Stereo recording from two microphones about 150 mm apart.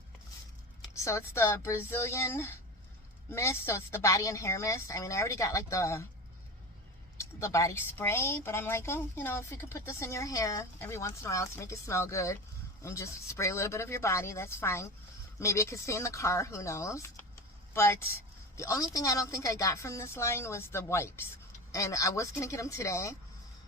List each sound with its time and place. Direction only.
1.0 s a woman's voice: 20° left (ahead or behind)
7.2 s a woman's voice: 20° left (ahead or behind)